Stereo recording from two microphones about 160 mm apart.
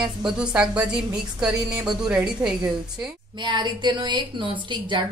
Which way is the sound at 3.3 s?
30° right (ahead or behind).